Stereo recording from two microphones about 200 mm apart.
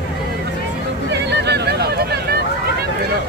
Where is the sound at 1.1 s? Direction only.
60° right (ahead or behind).